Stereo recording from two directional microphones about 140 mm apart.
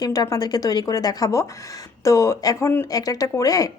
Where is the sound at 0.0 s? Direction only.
25° left (ahead or behind).